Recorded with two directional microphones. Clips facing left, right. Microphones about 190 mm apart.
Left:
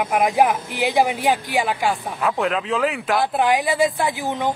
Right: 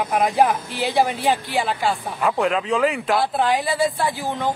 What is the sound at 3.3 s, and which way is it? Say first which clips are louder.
Speech: left 2 dB; 15° left (ahead or behind).